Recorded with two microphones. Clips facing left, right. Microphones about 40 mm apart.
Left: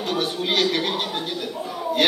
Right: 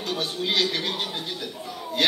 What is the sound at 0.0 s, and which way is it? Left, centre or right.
Speech, left.